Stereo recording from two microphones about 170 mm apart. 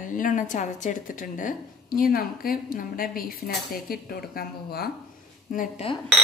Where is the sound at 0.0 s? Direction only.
50° left (ahead or behind).